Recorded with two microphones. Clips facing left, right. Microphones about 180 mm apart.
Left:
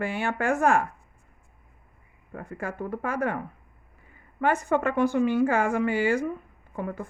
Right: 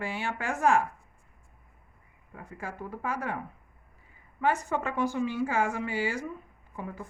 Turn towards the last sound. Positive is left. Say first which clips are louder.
# left 6 dB
turn(degrees=60)  # may be behind; listen again after turning